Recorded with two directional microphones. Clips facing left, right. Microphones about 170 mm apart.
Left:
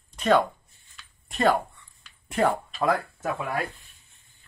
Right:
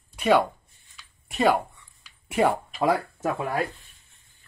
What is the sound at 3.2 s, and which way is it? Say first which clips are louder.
Speech: right 3 dB; 30° right (ahead or behind).